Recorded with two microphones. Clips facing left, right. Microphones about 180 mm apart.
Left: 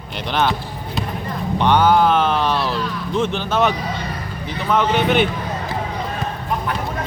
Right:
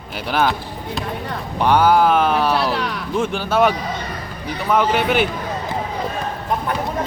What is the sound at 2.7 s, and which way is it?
Speech, 75° right (ahead or behind).